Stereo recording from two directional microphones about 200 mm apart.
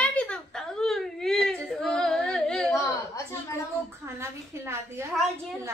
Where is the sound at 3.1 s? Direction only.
15° left (ahead or behind).